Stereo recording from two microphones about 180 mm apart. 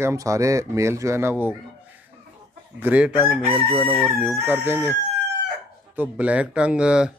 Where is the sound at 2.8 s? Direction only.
5° right (ahead or behind).